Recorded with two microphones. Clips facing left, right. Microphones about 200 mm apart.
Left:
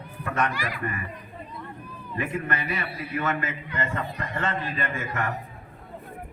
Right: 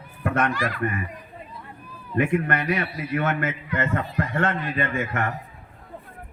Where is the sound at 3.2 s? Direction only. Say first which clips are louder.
Right 1 dB; 65° right (ahead or behind).